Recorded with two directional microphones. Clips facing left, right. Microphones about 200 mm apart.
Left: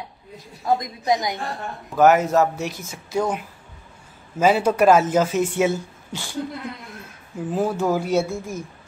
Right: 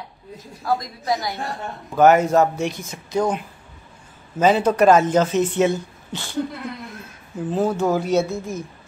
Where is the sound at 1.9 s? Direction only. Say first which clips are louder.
Right 1 dB; centre (ahead or behind).